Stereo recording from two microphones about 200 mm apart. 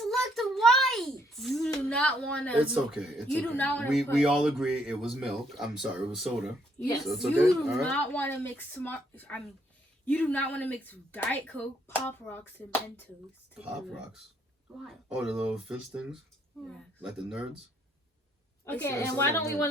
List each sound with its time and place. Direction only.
0.0 s a sound: centre (ahead or behind)
1.7 s speech: 5° left (ahead or behind)
3.9 s speech: centre (ahead or behind)
6.7 s a woman's voice: 15° left (ahead or behind)
7.1 s speech: centre (ahead or behind)
13.6 s speech: 5° right (ahead or behind)
18.6 s speech: 10° left (ahead or behind)